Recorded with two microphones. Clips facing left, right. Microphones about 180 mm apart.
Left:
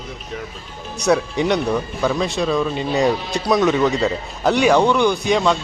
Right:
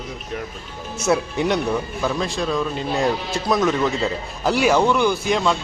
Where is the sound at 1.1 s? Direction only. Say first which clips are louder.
Left 2 dB; 5° right (ahead or behind).